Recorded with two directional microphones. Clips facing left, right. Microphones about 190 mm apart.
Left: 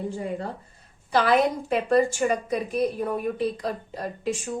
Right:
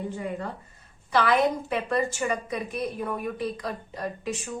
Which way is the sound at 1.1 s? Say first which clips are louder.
Left 2 dB; 35° left (ahead or behind).